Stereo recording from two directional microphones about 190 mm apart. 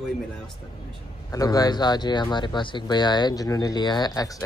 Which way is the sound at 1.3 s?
20° left (ahead or behind).